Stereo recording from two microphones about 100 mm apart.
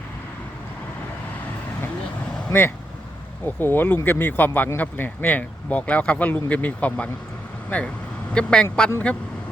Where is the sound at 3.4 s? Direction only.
20° left (ahead or behind).